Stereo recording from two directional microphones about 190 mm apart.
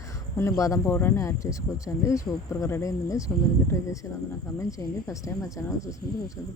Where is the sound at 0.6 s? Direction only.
15° left (ahead or behind).